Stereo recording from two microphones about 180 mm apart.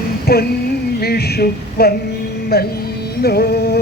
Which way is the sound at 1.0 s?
60° left (ahead or behind).